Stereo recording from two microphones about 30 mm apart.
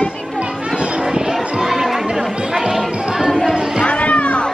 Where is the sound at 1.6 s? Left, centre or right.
Centre.